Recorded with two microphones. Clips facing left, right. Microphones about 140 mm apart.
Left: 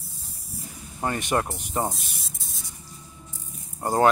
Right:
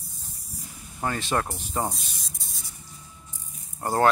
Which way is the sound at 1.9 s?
Centre (ahead or behind).